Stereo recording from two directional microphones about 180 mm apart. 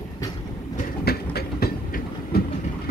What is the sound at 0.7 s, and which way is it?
Train, 60° left (ahead or behind).